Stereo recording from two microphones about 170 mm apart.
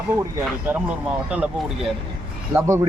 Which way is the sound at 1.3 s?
5° right (ahead or behind).